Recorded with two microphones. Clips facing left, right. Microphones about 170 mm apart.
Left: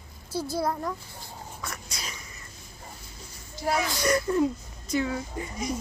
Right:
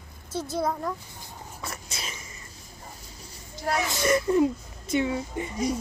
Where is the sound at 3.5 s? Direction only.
Centre (ahead or behind).